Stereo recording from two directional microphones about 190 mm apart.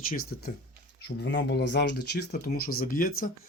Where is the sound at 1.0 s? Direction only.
60° left (ahead or behind).